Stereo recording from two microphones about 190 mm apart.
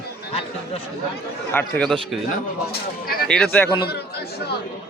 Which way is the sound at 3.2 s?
5° left (ahead or behind).